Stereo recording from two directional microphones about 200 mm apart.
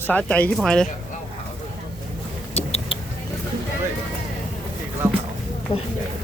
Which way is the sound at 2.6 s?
30° left (ahead or behind).